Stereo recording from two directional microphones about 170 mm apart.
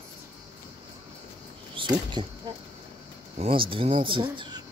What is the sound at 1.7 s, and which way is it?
Speech, 30° right (ahead or behind).